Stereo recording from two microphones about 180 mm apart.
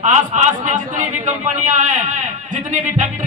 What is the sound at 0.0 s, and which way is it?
A man's voice, 40° right (ahead or behind).